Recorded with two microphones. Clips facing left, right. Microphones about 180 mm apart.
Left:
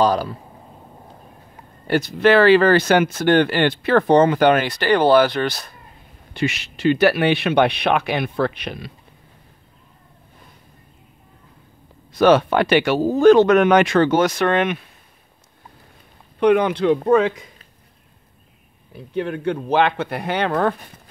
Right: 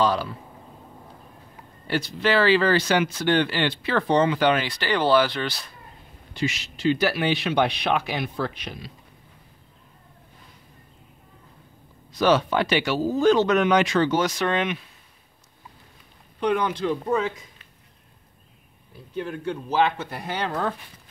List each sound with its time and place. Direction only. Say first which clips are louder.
0.0 s speech: left 5 dB; 40° left (ahead or behind)
1.9 s speech: left 8 dB; 50° left (ahead or behind)
6.3 s speech: left 4 dB; 60° left (ahead or behind)
12.1 s speech: left 6 dB; 55° left (ahead or behind)
16.3 s speech: left 8 dB; 65° left (ahead or behind)
18.9 s speech: left 6 dB; 70° left (ahead or behind)